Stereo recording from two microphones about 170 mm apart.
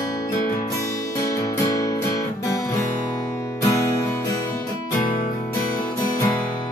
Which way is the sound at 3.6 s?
20° left (ahead or behind).